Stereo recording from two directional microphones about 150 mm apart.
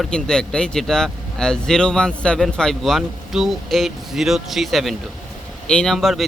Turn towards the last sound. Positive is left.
turn(degrees=0)  # may be behind; listen again after turning